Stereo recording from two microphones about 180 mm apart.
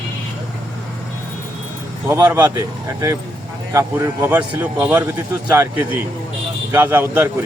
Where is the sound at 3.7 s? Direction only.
15° right (ahead or behind).